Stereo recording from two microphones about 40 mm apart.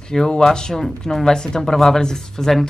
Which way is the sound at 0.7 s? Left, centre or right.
Centre.